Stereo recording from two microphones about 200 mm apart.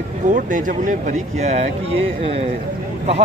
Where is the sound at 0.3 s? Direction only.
40° right (ahead or behind).